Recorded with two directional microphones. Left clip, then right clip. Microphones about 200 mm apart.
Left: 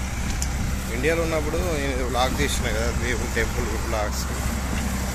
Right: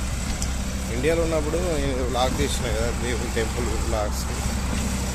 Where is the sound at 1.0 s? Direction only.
10° right (ahead or behind).